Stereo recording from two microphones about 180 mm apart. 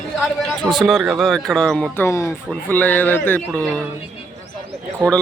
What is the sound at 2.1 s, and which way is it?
A man's voice, 15° left (ahead or behind).